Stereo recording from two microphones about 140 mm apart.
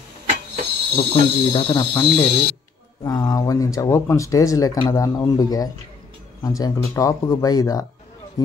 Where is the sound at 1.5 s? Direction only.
35° left (ahead or behind).